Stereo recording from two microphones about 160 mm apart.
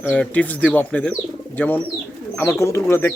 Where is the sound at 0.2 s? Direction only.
10° left (ahead or behind).